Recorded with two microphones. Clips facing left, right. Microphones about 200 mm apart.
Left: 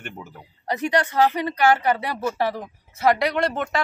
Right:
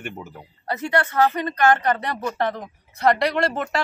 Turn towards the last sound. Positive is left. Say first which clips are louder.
# even
turn(degrees=0)  # may be behind; listen again after turning